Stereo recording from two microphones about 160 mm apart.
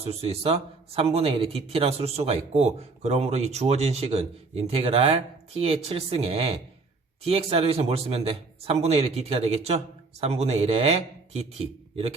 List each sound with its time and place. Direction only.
0.0 s a man's voice: 40° right (ahead or behind)